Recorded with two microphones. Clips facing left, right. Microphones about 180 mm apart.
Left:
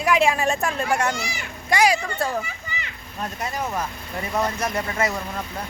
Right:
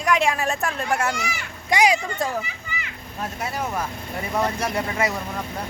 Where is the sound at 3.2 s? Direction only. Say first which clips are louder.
Even; 5° right (ahead or behind).